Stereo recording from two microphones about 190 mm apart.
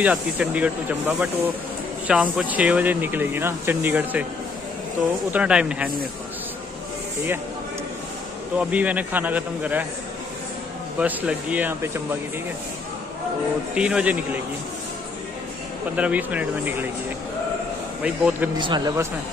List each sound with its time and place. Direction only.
0.0 s speech: 5° right (ahead or behind)
5.3 s a man's voice: 5° right (ahead or behind)
8.5 s speech: 10° right (ahead or behind)
11.0 s speech: 5° right (ahead or behind)
13.7 s a man's voice: 5° right (ahead or behind)
16.0 s speech: 5° right (ahead or behind)
18.0 s speech: 5° right (ahead or behind)
18.6 s a man's voice: 20° right (ahead or behind)